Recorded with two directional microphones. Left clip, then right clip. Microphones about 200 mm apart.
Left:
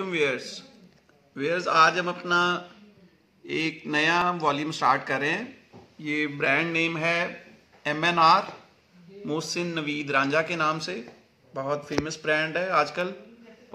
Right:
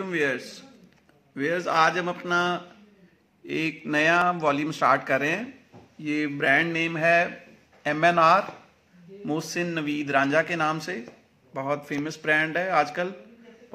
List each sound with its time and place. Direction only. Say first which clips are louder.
0.0 s a man's voice: even; 15° right (ahead or behind)